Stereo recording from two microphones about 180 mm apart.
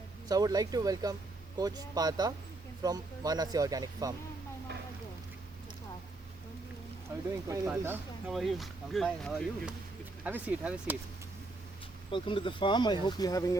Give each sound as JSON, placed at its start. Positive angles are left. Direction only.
{"t": 0.3, "sound": "speech", "side_deg": -20}
{"t": 4.7, "sound": "a sound", "side_deg": -70}
{"t": 7.4, "sound": "speech", "side_deg": -15}
{"t": 8.3, "sound": "speech", "side_deg": 0}
{"t": 10.2, "sound": "speech", "side_deg": -10}
{"t": 12.1, "sound": "speech", "side_deg": 25}